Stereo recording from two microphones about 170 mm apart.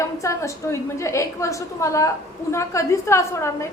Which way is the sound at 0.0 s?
20° left (ahead or behind).